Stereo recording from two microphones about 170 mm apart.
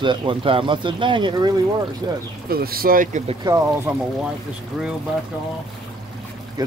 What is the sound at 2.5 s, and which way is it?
Speech, 60° right (ahead or behind).